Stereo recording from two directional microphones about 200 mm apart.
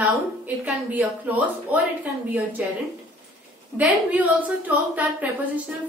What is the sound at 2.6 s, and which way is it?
Speech, 10° right (ahead or behind).